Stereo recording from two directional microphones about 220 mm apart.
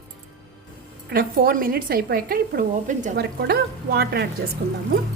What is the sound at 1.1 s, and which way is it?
A woman's voice, 40° right (ahead or behind).